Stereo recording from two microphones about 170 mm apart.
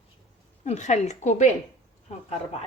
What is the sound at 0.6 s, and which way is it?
A woman's voice, 45° left (ahead or behind).